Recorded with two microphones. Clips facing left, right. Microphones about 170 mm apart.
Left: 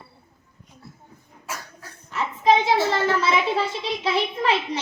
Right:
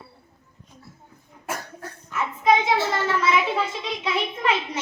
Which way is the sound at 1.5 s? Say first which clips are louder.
Right 4 dB; 50° right (ahead or behind).